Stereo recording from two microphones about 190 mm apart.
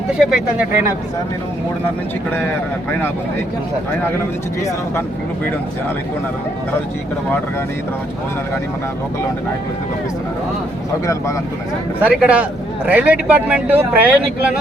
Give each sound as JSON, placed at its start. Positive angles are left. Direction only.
{"t": 0.2, "sound": "speech", "side_deg": -5}
{"t": 11.0, "sound": "speech", "side_deg": 15}
{"t": 11.9, "sound": "a man's voice", "side_deg": -5}